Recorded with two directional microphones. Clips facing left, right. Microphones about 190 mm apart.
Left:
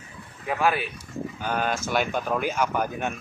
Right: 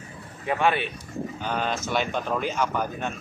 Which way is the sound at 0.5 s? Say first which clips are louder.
Right 1 dB; 5° left (ahead or behind).